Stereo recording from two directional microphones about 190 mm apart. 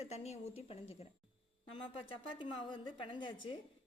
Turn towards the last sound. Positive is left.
turn(degrees=25)  # may be behind; listen again after turning